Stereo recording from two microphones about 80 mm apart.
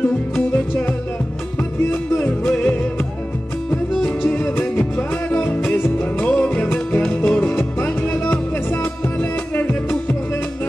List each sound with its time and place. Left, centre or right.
1.9 s music: left
4.2 s music: left
5.7 s music: centre